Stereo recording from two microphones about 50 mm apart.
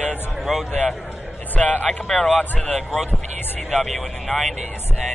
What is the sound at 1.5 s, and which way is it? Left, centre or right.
Speech, left.